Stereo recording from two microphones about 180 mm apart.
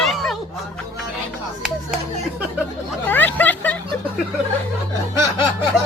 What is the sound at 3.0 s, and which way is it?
Vehicle, 10° left (ahead or behind).